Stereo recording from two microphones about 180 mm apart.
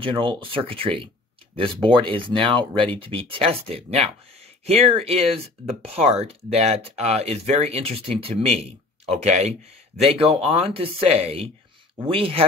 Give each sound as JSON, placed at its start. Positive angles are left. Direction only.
{"t": 0.0, "sound": "speech", "side_deg": -30}